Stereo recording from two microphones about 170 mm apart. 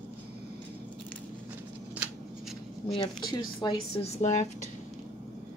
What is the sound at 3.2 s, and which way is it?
Speech, 25° left (ahead or behind).